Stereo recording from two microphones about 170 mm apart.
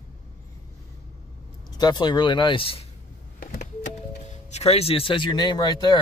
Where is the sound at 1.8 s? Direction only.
25° left (ahead or behind).